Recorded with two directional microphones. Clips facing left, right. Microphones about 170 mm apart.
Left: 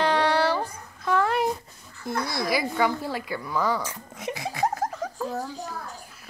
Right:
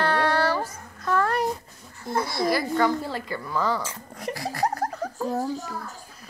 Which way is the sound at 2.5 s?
5° left (ahead or behind).